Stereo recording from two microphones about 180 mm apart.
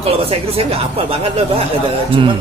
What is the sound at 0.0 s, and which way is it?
Speech, 30° right (ahead or behind).